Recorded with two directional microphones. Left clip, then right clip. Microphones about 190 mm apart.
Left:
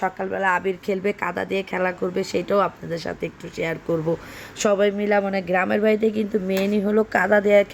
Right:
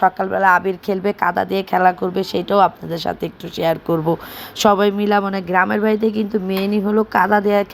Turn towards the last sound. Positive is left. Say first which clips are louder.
# right 2 dB
turn(degrees=0)  # may be behind; listen again after turning